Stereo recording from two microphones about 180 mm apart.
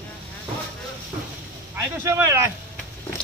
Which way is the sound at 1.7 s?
15° right (ahead or behind).